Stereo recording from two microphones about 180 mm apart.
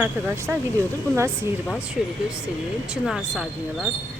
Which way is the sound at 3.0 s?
Centre (ahead or behind).